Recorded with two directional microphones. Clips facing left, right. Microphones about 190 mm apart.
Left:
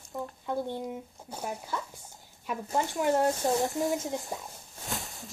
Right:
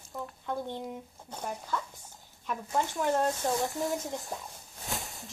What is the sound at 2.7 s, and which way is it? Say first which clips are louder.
Speech: left 2 dB; 20° left (ahead or behind).